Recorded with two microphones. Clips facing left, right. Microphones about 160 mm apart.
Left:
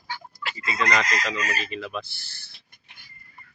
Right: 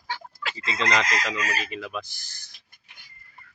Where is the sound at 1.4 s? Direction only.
10° right (ahead or behind).